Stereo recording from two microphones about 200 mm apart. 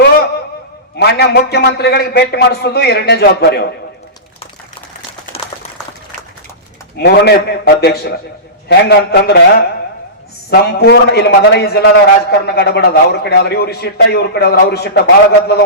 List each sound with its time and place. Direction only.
0.9 s a man's voice: 55° left (ahead or behind)
7.0 s a man's voice: 55° left (ahead or behind)